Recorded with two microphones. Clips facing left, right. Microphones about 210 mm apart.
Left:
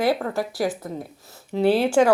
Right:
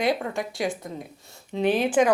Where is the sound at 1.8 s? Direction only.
10° left (ahead or behind).